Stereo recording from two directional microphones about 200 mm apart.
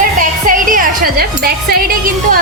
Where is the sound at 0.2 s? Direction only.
45° right (ahead or behind).